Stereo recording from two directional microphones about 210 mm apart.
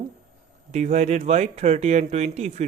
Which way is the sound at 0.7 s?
35° right (ahead or behind).